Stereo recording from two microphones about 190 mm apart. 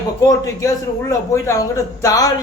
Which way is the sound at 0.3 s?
15° left (ahead or behind).